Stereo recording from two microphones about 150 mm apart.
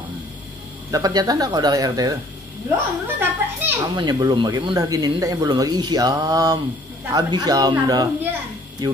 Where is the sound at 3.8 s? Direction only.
25° right (ahead or behind).